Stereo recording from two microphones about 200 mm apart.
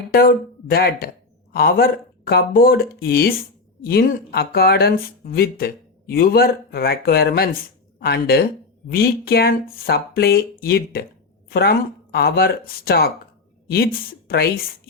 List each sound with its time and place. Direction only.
0.1 s speech: 50° left (ahead or behind)